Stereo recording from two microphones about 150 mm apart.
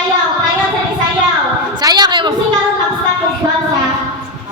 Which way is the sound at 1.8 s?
30° right (ahead or behind).